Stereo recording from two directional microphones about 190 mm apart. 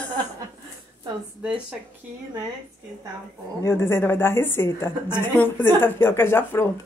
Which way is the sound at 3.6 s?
15° left (ahead or behind).